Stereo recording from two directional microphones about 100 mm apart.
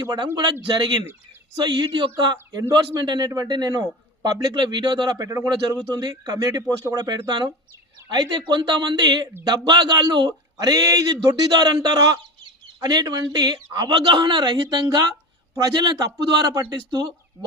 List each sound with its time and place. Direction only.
0.0 s a man's voice: 45° right (ahead or behind)
5.1 s a man's voice: 30° right (ahead or behind); by 10.3 s 50° right (ahead or behind)
10.6 s a man's voice: 40° right (ahead or behind)